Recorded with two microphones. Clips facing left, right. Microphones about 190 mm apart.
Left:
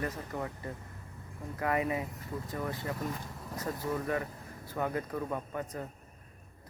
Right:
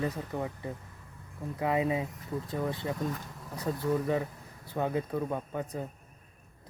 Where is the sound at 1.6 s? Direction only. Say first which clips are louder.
Right 3 dB; 20° right (ahead or behind).